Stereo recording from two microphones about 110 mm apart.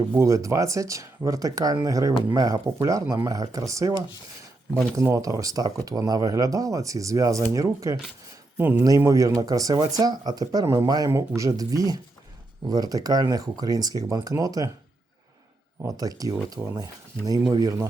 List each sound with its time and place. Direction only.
0.1 s speech: 25° right (ahead or behind)
8.5 s speech: 15° right (ahead or behind)
9.0 s speech: 30° right (ahead or behind)
16.0 s speech: 35° right (ahead or behind)